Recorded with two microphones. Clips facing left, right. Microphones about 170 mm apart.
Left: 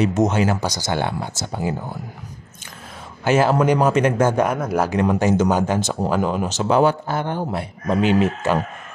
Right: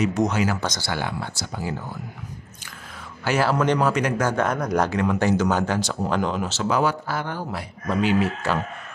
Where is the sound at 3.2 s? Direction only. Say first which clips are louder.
Left 5 dB; 20° left (ahead or behind).